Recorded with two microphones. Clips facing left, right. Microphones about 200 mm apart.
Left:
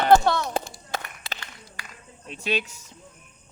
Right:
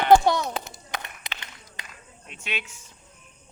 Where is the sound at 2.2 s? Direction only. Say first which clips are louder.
Left 8 dB; 35° left (ahead or behind).